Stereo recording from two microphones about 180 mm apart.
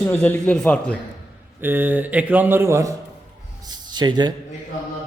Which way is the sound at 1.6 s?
10° right (ahead or behind).